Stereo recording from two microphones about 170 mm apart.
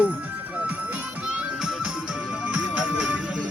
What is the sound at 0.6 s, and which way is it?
Music, 10° right (ahead or behind).